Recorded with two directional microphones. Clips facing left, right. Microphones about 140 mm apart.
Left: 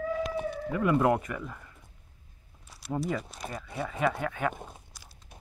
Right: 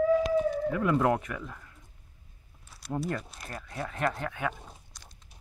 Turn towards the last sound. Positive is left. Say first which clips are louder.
# even
turn(degrees=5)  # may be behind; listen again after turning